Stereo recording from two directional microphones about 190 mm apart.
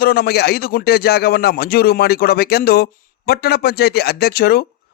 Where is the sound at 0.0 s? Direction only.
55° left (ahead or behind).